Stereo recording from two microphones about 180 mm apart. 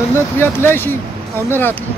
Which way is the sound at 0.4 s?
10° left (ahead or behind).